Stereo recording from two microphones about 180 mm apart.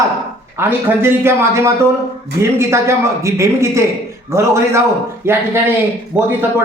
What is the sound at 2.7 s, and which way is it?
A man's voice, 15° right (ahead or behind).